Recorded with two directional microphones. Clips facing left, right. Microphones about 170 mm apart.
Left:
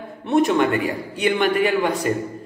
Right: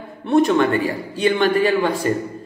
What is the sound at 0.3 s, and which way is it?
A man's voice, 20° left (ahead or behind).